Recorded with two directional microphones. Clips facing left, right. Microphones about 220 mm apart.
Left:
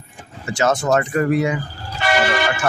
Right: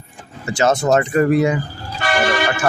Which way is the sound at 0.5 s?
25° right (ahead or behind).